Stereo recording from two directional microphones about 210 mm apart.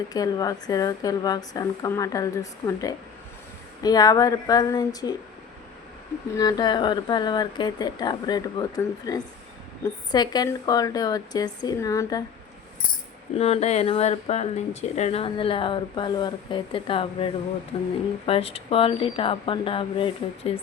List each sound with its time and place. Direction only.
0.1 s speech: 15° left (ahead or behind)
6.3 s speech: 15° left (ahead or behind)
13.3 s speech: 30° left (ahead or behind)